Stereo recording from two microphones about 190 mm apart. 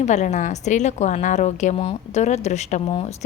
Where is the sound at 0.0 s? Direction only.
40° left (ahead or behind).